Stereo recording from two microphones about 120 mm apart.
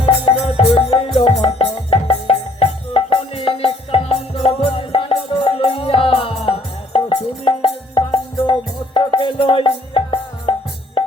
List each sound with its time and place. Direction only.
0.0 s music: 50° left (ahead or behind)